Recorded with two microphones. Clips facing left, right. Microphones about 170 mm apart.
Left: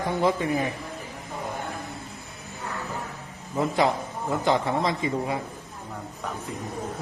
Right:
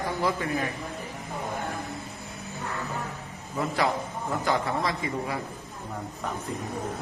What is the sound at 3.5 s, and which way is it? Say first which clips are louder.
A man's voice: left 3 dB; 20° left (ahead or behind).